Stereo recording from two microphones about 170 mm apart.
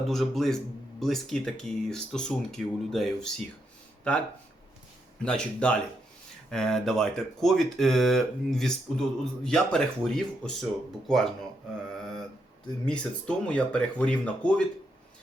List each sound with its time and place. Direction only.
0.1 s speech: centre (ahead or behind)
5.2 s speech: 5° left (ahead or behind)
12.8 s speech: 5° left (ahead or behind)